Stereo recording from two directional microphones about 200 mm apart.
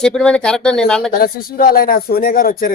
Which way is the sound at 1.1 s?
50° left (ahead or behind).